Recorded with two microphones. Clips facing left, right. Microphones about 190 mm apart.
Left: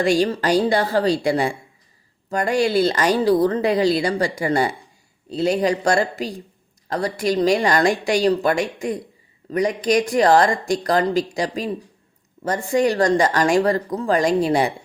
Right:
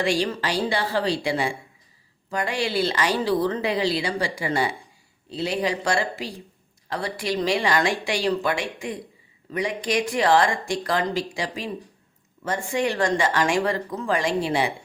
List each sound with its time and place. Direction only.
0.0 s a woman's voice: 45° left (ahead or behind)